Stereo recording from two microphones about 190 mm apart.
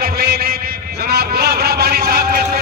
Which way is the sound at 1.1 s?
55° right (ahead or behind).